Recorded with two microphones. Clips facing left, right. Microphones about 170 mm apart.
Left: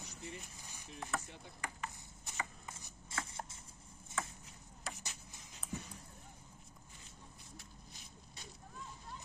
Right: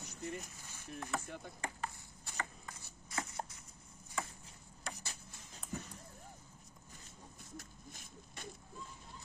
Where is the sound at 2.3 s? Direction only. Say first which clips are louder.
Even; 20° left (ahead or behind).